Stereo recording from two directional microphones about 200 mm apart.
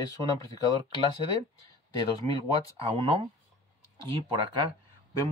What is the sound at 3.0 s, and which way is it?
Speech, 25° right (ahead or behind).